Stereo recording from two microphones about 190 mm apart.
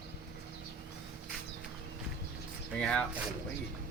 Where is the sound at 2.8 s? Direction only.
5° left (ahead or behind).